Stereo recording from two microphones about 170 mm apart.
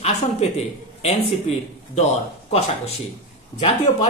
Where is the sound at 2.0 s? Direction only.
40° left (ahead or behind).